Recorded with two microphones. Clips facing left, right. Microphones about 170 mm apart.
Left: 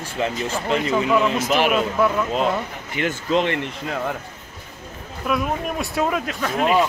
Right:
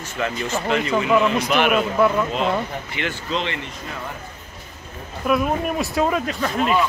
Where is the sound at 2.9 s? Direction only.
45° left (ahead or behind).